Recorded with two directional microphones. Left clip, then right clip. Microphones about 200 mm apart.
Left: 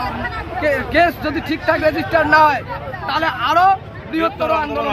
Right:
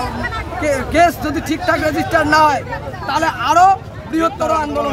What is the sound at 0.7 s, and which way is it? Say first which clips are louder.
A man's voice: right 4 dB; 20° right (ahead or behind).